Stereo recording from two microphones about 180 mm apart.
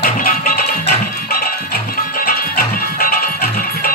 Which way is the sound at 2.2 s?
55° left (ahead or behind).